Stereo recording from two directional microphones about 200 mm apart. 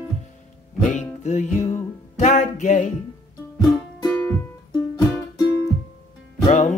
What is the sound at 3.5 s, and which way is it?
Music, 20° left (ahead or behind).